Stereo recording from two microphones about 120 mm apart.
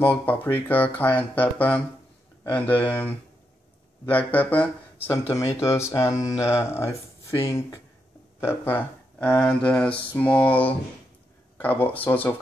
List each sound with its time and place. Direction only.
0.0 s speech: 15° left (ahead or behind)